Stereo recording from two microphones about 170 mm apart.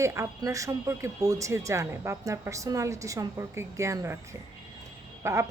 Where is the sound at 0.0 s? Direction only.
15° right (ahead or behind).